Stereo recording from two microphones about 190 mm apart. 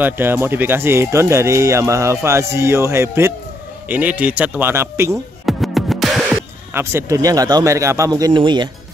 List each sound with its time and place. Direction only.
0.0 s speech: 10° right (ahead or behind)
5.4 s music: centre (ahead or behind)
6.7 s speech: 15° right (ahead or behind)